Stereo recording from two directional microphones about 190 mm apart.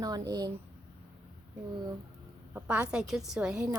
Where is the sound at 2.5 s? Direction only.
10° right (ahead or behind).